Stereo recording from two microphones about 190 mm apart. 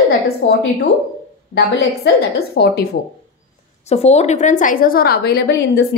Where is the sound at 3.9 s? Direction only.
35° left (ahead or behind).